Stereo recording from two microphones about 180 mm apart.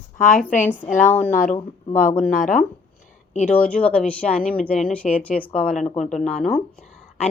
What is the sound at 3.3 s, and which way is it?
Speech, 40° left (ahead or behind).